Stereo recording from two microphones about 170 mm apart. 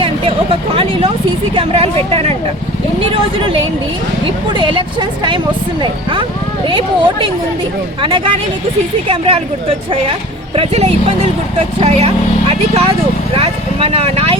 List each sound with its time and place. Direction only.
0.0 s speech: 35° right (ahead or behind)
4.5 s speech: 30° right (ahead or behind)